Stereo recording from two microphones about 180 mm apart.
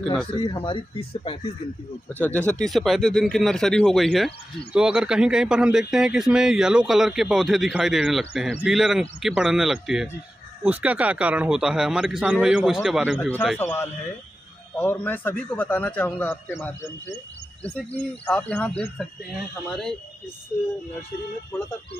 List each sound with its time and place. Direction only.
0.0 s speech: 5° left (ahead or behind)
0.3 s speech: 25° left (ahead or behind)
2.1 s speech: 10° left (ahead or behind)
13.6 s a man's voice: 10° left (ahead or behind)
21.5 s a man's voice: 15° left (ahead or behind)